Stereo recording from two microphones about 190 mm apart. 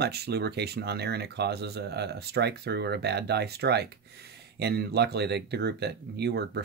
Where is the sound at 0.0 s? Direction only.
60° right (ahead or behind).